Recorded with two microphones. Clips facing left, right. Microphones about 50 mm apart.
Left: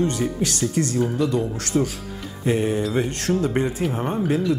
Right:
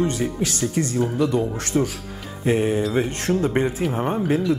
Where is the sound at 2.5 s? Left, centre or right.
Right.